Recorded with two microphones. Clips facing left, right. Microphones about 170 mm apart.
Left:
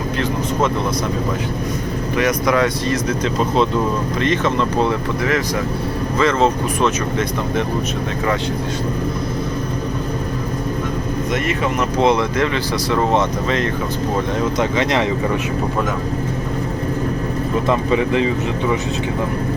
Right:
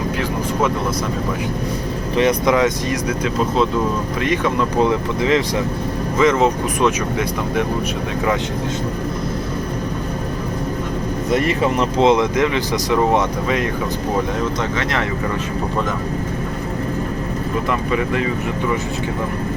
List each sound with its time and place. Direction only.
2.1 s speech: 25° right (ahead or behind)
4.2 s speech: 10° right (ahead or behind)
11.3 s speech: 30° right (ahead or behind)
11.9 s speech: 20° right (ahead or behind)
17.7 s speech: 25° left (ahead or behind)